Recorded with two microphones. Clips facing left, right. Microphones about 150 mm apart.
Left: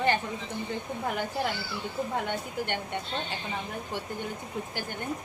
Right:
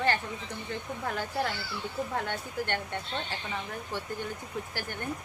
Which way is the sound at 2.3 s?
15° left (ahead or behind).